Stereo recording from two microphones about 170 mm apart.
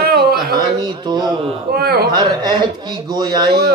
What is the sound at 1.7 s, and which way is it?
Speech, 65° right (ahead or behind).